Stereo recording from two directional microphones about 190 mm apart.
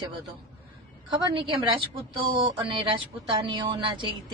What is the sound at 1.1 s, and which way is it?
Speech, 20° right (ahead or behind).